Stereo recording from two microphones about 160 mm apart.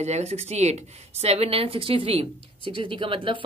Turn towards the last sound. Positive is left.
turn(degrees=-30)  # may be behind; listen again after turning